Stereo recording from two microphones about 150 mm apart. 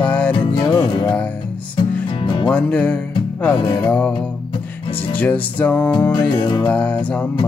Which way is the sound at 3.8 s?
5° left (ahead or behind).